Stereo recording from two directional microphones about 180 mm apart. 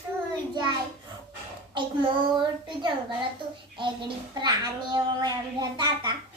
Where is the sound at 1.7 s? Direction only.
25° right (ahead or behind).